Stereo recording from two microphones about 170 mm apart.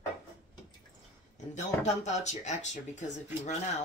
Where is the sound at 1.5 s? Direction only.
40° left (ahead or behind).